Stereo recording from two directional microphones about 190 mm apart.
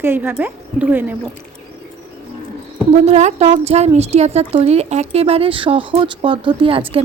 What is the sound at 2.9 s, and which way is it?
A woman's voice, 35° right (ahead or behind).